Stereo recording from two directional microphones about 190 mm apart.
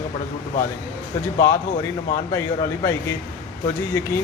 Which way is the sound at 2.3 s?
15° left (ahead or behind).